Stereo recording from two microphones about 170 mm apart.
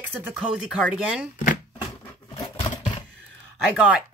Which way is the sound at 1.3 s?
50° left (ahead or behind).